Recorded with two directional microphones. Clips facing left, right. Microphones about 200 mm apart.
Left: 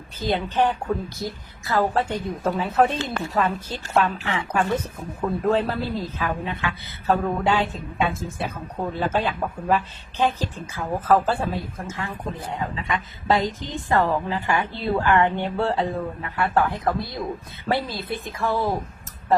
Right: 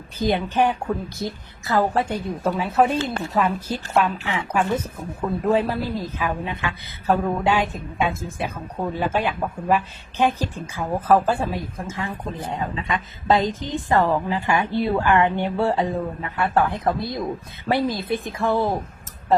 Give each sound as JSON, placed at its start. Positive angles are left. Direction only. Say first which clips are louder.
{"t": 0.2, "sound": "a woman's voice", "louder": "right 2 dB", "side_deg": -15}